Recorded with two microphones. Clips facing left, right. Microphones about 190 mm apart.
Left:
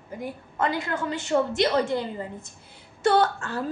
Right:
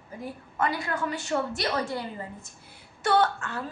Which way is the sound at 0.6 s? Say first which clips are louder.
Left 2 dB; 20° left (ahead or behind).